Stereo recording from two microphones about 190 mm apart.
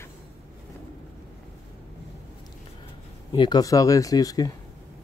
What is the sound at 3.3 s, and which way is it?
Speech, 20° left (ahead or behind).